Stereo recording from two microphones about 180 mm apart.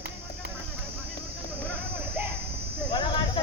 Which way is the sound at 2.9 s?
25° left (ahead or behind).